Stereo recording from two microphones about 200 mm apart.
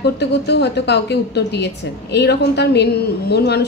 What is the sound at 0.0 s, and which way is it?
A woman's voice, 55° left (ahead or behind).